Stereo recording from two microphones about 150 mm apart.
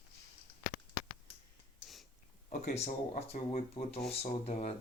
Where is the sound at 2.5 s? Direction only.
50° left (ahead or behind).